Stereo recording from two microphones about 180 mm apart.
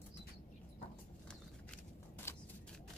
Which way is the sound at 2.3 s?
15° left (ahead or behind).